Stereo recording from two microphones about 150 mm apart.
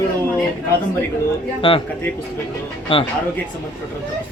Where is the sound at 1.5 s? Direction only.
35° left (ahead or behind).